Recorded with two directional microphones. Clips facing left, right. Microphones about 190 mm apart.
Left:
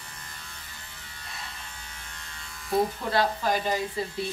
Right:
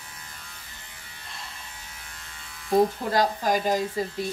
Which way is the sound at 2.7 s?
40° right (ahead or behind).